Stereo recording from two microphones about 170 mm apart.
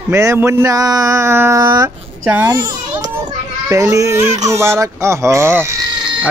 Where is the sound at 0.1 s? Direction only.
15° right (ahead or behind).